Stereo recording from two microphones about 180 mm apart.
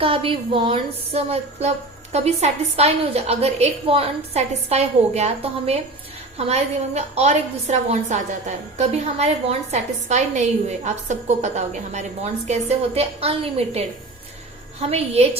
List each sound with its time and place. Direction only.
0.0 s a woman's voice: 30° right (ahead or behind)